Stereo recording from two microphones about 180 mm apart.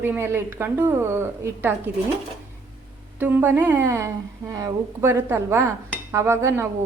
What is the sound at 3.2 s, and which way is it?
A woman's voice, 10° right (ahead or behind).